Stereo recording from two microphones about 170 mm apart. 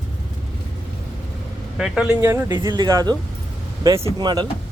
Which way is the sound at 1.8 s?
Centre (ahead or behind).